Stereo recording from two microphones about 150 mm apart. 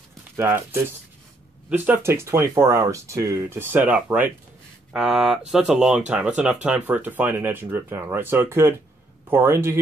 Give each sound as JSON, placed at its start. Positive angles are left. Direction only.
{"t": 1.7, "sound": "speech", "side_deg": -15}